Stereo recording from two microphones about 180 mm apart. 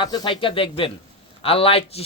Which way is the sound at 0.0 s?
25° left (ahead or behind).